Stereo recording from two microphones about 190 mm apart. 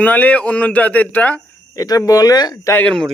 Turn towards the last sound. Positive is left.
turn(degrees=5)  # may be behind; listen again after turning